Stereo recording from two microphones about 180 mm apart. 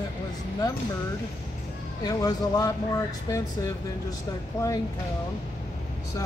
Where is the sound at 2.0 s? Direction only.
20° left (ahead or behind).